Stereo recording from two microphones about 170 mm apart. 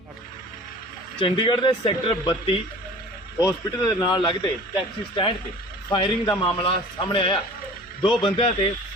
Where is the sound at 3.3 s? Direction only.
20° left (ahead or behind).